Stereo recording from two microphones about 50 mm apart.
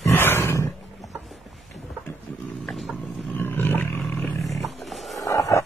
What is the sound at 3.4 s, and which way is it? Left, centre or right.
Roar, left.